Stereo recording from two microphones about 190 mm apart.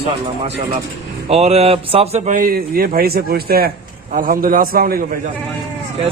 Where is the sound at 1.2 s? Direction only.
30° right (ahead or behind); by 5.2 s 50° right (ahead or behind).